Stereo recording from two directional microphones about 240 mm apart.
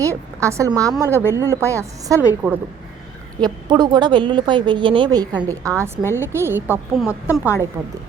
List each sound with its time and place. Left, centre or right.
0.0 s a woman's voice: centre